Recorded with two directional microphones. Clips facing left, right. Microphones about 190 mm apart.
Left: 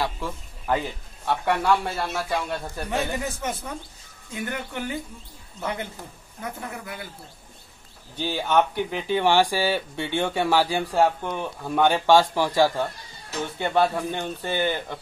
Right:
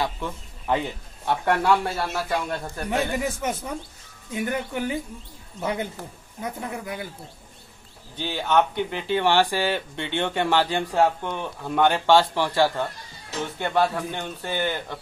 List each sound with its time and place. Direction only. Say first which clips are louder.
0.0 s a man's voice: even; centre (ahead or behind)
2.9 s speech: right 3 dB; 10° right (ahead or behind)
8.2 s speech: even; 10° left (ahead or behind)